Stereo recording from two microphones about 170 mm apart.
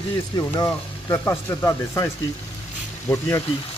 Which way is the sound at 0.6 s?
15° left (ahead or behind).